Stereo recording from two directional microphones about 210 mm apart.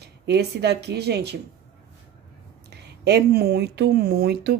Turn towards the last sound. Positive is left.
turn(degrees=-50)  # may be behind; listen again after turning